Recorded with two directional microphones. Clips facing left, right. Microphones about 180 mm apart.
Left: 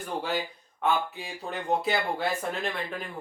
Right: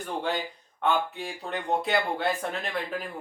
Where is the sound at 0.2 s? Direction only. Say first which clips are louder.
Right 1 dB; 5° left (ahead or behind).